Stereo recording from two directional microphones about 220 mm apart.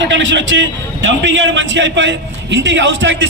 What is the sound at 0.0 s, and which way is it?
A man's voice, 55° right (ahead or behind).